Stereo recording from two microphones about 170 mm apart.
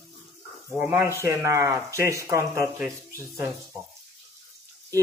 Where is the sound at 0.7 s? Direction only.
10° right (ahead or behind).